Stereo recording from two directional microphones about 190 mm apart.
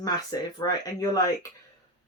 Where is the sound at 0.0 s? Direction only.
20° left (ahead or behind).